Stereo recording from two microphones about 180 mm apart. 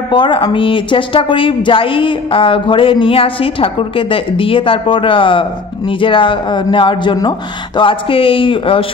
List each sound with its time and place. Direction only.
0.1 s a woman's voice: 25° left (ahead or behind)